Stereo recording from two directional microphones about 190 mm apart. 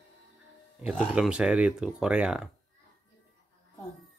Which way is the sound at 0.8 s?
5° right (ahead or behind).